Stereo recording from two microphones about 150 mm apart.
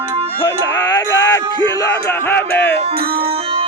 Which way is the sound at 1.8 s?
15° left (ahead or behind).